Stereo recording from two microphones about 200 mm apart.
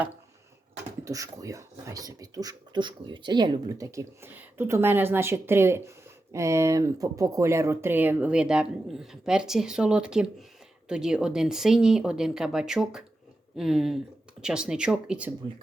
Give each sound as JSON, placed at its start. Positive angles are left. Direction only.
{"t": 1.0, "sound": "speech", "side_deg": -15}